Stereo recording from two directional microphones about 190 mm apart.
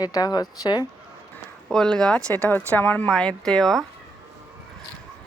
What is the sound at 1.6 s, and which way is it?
Speech, 5° left (ahead or behind).